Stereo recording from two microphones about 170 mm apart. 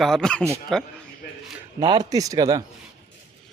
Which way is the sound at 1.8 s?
25° right (ahead or behind).